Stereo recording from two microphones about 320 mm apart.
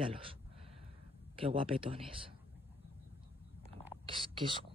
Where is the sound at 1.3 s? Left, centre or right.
Centre.